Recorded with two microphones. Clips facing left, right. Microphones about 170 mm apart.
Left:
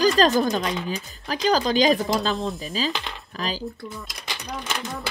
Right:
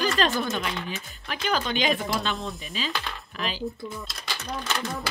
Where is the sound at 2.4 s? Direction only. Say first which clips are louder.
Left 6 dB; centre (ahead or behind).